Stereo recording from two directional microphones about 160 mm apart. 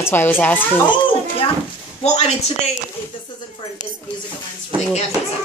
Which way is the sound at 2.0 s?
40° left (ahead or behind).